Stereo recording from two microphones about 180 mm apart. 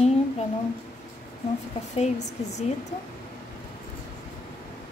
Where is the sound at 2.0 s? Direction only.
40° left (ahead or behind).